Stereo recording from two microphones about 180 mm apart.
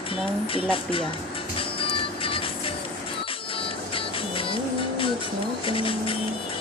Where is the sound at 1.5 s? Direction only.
30° left (ahead or behind).